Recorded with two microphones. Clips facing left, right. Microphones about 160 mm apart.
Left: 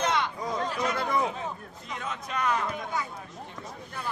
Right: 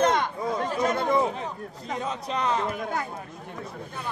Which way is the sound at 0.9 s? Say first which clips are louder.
Right 4 dB; 25° right (ahead or behind).